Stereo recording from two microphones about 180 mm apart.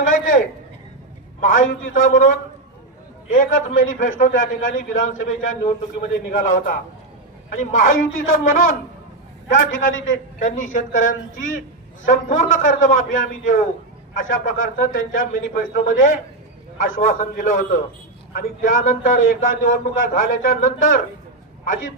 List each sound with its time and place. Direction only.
1.5 s a man's voice: 50° left (ahead or behind)
9.6 s a man's voice: 90° left
10.4 s a man's voice: 45° left (ahead or behind)